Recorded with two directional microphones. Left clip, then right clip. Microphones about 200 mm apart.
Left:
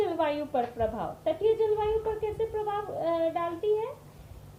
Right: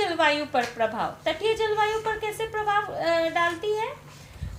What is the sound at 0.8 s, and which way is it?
Speech, 35° right (ahead or behind).